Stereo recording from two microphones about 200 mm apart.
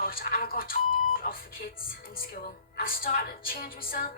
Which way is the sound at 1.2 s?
45° left (ahead or behind).